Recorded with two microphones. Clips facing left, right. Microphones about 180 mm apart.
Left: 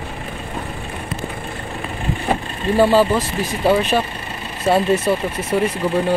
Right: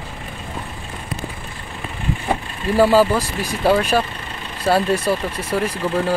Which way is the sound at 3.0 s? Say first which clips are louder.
Even; 20° left (ahead or behind).